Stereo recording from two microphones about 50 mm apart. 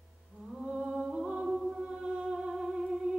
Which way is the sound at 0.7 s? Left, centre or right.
Centre.